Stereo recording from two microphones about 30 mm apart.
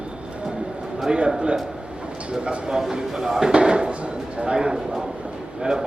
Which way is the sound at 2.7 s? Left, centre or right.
Centre.